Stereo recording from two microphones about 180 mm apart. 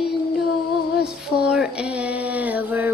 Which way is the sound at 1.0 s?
5° right (ahead or behind).